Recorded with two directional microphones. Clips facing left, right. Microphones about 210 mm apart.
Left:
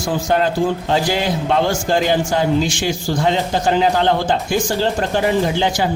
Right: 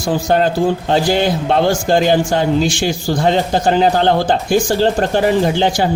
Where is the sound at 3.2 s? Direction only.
40° right (ahead or behind).